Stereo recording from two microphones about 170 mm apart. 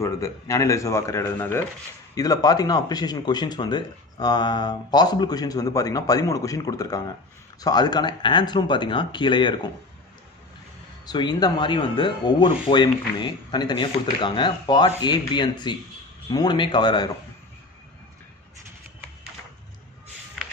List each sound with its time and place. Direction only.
0.0 s speech: 20° left (ahead or behind)
11.1 s speech: 25° left (ahead or behind)